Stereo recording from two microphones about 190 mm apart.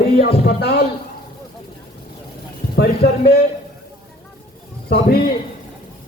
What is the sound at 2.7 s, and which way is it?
Speech, 55° left (ahead or behind).